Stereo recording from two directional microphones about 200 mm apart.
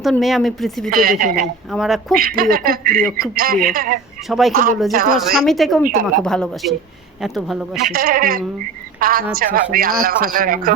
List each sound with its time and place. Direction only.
0.0 s a woman's voice: centre (ahead or behind)
0.9 s a man's voice: 45° right (ahead or behind)
1.7 s a woman's voice: centre (ahead or behind)
2.1 s a man's voice: 45° right (ahead or behind)
4.3 s a woman's voice: centre (ahead or behind)
4.5 s a man's voice: 45° right (ahead or behind)
5.1 s a woman's voice: centre (ahead or behind)
7.8 s a man's voice: 45° right (ahead or behind)